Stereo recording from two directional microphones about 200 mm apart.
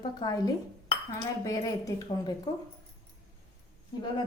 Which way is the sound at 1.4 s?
15° left (ahead or behind).